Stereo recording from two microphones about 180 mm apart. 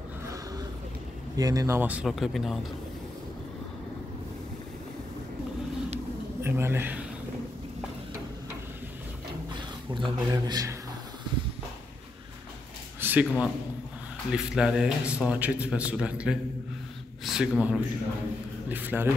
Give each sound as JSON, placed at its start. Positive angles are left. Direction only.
{"t": 1.3, "sound": "a man's voice", "side_deg": -20}
{"t": 6.4, "sound": "a man's voice", "side_deg": -15}
{"t": 9.9, "sound": "a man's voice", "side_deg": -25}
{"t": 13.0, "sound": "a man's voice", "side_deg": -10}